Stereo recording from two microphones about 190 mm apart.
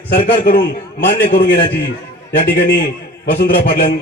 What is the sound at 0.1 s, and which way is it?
Speech, 50° left (ahead or behind).